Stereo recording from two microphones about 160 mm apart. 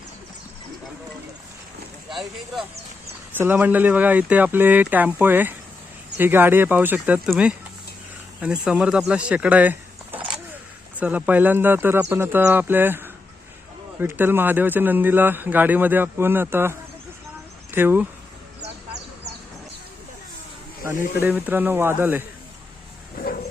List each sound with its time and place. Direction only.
3.3 s a man's voice: 10° right (ahead or behind)
21.2 s a man's voice: 10° right (ahead or behind)
23.2 s a sound: 65° left (ahead or behind)